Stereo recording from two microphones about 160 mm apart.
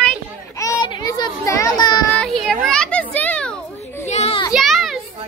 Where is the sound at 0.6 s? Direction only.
20° left (ahead or behind).